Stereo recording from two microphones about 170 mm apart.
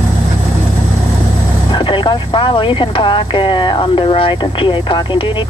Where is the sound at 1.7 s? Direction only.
30° left (ahead or behind).